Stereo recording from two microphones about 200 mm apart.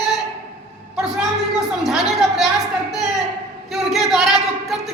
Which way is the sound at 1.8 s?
Centre (ahead or behind).